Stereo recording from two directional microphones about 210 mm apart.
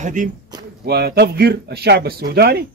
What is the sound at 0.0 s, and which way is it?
Speech, 35° right (ahead or behind).